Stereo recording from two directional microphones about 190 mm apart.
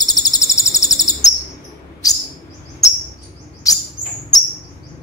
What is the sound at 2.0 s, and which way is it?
Chirp, 20° left (ahead or behind).